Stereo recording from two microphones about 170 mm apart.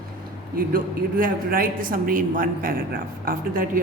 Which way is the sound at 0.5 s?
55° right (ahead or behind).